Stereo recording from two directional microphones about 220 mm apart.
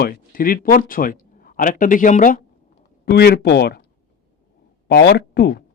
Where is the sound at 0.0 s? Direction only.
40° left (ahead or behind).